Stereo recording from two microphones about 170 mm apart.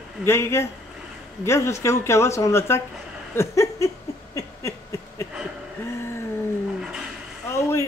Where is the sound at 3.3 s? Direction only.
15° left (ahead or behind).